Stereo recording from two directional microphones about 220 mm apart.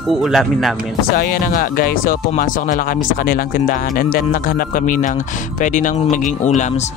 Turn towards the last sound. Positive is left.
turn(degrees=35)  # may be behind; listen again after turning